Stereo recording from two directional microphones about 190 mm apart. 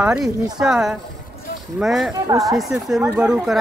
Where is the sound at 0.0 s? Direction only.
5° right (ahead or behind).